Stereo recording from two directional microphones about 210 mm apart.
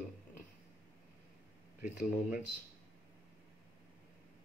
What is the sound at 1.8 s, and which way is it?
Speech, 40° left (ahead or behind).